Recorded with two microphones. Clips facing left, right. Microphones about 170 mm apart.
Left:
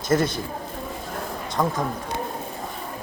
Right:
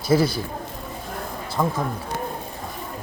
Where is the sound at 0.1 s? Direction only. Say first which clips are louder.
Right 2 dB; 10° right (ahead or behind).